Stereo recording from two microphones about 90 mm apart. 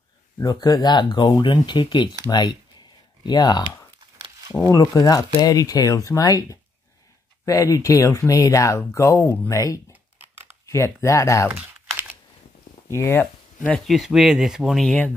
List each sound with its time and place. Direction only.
0.4 s speech: 45° left (ahead or behind)
4.6 s speech: 40° left (ahead or behind)
11.4 s crumpling: 10° right (ahead or behind)
12.9 s speech: 25° left (ahead or behind)
13.8 s speech: centre (ahead or behind)